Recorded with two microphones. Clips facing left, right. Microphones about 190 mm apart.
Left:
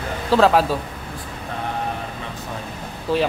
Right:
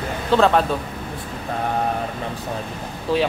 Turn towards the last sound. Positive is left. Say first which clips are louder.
# even
turn(degrees=0)  # may be behind; listen again after turning